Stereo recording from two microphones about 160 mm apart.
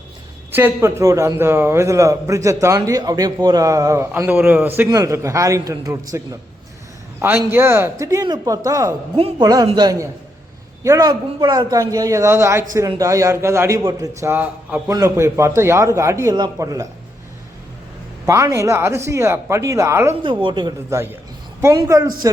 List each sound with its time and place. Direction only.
0.5 s a man's voice: 15° right (ahead or behind)
18.3 s a man's voice: 20° right (ahead or behind)
20.4 s a man's voice: 30° right (ahead or behind)